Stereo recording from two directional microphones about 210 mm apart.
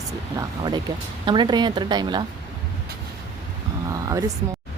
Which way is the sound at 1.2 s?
20° right (ahead or behind).